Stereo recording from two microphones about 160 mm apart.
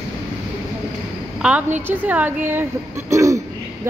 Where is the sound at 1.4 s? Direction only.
10° right (ahead or behind).